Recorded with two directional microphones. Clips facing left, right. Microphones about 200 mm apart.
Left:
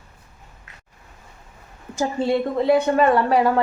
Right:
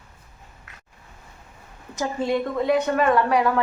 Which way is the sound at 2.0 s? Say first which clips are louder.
Left 3 dB; 30° left (ahead or behind).